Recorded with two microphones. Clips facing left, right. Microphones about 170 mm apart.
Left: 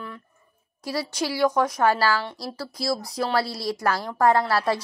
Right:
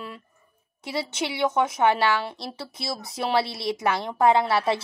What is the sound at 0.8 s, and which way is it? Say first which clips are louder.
A woman's voice: left 1 dB; 25° right (ahead or behind).